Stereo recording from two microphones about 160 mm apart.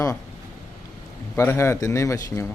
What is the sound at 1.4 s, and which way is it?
A man's voice, 15° left (ahead or behind).